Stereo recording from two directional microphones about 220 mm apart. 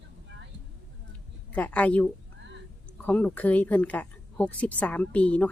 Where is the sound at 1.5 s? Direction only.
5° left (ahead or behind).